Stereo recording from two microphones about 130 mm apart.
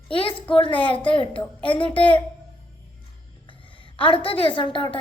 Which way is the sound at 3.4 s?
40° left (ahead or behind).